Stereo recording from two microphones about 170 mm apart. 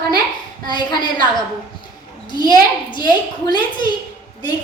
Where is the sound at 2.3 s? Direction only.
25° left (ahead or behind).